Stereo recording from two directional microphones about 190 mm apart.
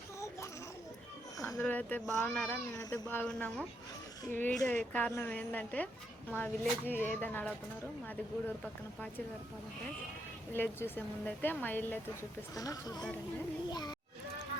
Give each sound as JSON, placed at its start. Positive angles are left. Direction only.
{"t": 1.4, "sound": "a woman's voice", "side_deg": 15}
{"t": 8.6, "sound": "speech", "side_deg": 5}
{"t": 10.5, "sound": "a woman's voice", "side_deg": 10}